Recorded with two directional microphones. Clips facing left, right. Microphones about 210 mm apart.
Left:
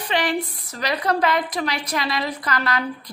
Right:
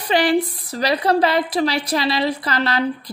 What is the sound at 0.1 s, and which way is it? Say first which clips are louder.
A woman's voice: right 6 dB; 35° right (ahead or behind).